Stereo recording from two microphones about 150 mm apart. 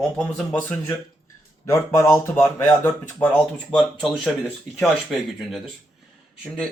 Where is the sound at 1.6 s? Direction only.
15° left (ahead or behind); by 6.7 s centre (ahead or behind).